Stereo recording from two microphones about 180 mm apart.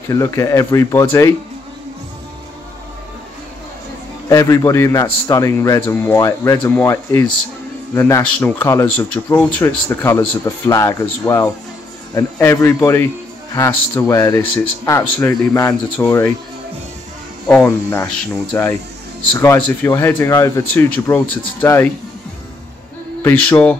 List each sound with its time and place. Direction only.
0.1 s speech: 15° left (ahead or behind)
4.3 s speech: 15° left (ahead or behind)
17.5 s speech: 10° left (ahead or behind)
23.2 s speech: 10° left (ahead or behind)